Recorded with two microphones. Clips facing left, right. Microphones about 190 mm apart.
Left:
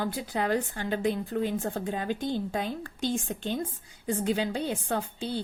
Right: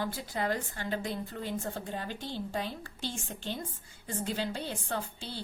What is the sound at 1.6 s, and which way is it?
A woman's voice, 50° left (ahead or behind).